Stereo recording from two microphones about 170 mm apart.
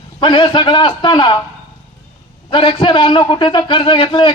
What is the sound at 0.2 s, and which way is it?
A man's voice, 30° left (ahead or behind).